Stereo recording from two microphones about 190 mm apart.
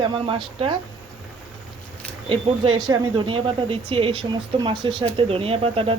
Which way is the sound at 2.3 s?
25° right (ahead or behind).